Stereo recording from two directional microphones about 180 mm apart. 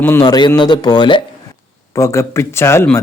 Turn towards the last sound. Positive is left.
turn(degrees=15)  # may be behind; listen again after turning